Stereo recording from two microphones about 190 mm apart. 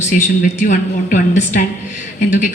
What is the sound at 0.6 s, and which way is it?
A woman's voice, 40° left (ahead or behind).